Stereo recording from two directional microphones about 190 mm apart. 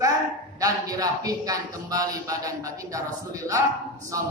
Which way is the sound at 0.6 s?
20° right (ahead or behind).